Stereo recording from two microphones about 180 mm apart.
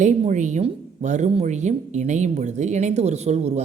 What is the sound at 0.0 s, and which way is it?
Speech, 45° right (ahead or behind).